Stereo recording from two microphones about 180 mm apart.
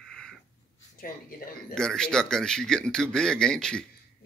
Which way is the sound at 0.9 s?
50° left (ahead or behind).